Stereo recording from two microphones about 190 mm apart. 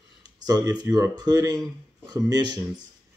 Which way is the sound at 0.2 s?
20° right (ahead or behind).